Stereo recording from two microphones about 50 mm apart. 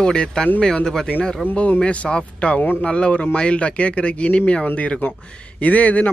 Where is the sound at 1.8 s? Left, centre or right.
Left.